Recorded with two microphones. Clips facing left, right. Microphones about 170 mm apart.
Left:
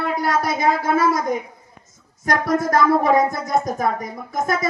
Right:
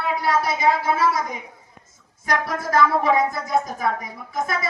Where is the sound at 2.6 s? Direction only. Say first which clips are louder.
Left 1 dB; 45° left (ahead or behind).